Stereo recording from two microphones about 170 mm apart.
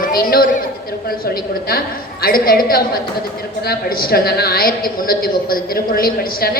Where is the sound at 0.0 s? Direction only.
60° left (ahead or behind).